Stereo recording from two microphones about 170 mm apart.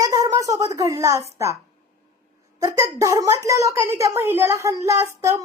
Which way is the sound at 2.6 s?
20° right (ahead or behind).